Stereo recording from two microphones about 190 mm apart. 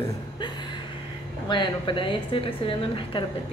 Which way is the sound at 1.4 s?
25° left (ahead or behind).